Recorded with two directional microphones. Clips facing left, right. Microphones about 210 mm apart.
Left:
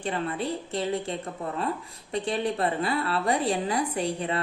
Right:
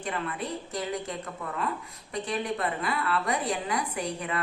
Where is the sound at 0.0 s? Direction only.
30° left (ahead or behind).